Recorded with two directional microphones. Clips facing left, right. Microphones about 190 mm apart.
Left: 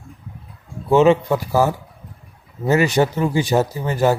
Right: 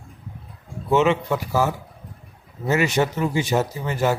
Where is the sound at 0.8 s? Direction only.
35° left (ahead or behind).